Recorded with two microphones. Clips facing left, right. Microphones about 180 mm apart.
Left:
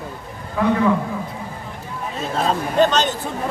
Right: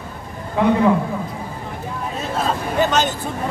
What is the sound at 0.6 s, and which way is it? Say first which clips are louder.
Speech: right 2 dB; 20° right (ahead or behind).